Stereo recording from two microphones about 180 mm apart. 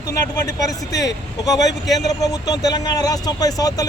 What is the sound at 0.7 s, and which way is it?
Speech, 20° left (ahead or behind).